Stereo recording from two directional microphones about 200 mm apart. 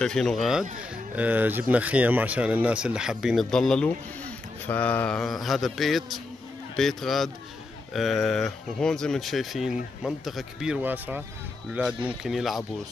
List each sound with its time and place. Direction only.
0.0 s speech: centre (ahead or behind)